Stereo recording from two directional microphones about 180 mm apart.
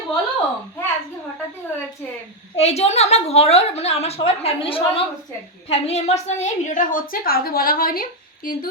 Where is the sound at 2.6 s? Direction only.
35° left (ahead or behind).